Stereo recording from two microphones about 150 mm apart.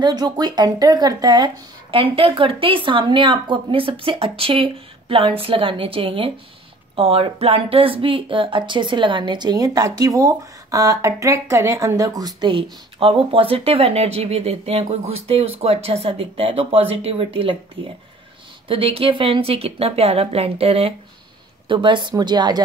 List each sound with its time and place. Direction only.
0.0 s speech: 25° right (ahead or behind); by 20.9 s 45° right (ahead or behind)
21.6 s a woman's voice: 35° right (ahead or behind)